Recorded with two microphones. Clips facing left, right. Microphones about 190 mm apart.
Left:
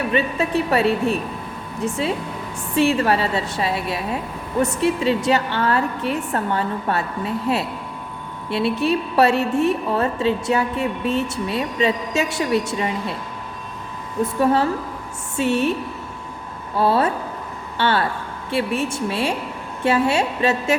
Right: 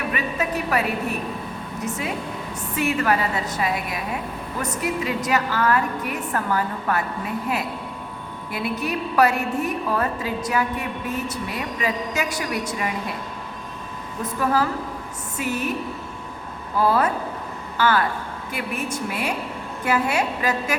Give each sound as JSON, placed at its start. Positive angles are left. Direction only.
{"t": 0.1, "sound": "a woman's voice", "side_deg": 30}
{"t": 14.3, "sound": "a woman's voice", "side_deg": 30}
{"t": 16.7, "sound": "a woman's voice", "side_deg": 30}